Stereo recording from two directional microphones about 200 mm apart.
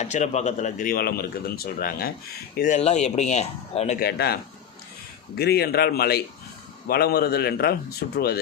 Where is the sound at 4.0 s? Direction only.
55° left (ahead or behind).